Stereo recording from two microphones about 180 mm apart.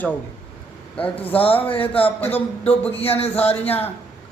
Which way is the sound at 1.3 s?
30° left (ahead or behind).